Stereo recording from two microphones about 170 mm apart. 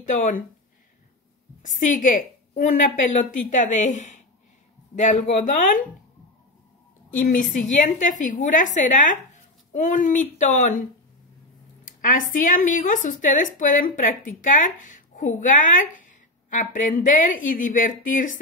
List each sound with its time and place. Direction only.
0.0 s speech: 45° left (ahead or behind)
1.6 s speech: 50° left (ahead or behind)
7.2 s speech: 50° left (ahead or behind)
11.8 s speech: 50° left (ahead or behind)